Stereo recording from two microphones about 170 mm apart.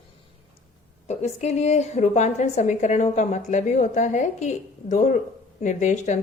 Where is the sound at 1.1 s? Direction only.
40° left (ahead or behind).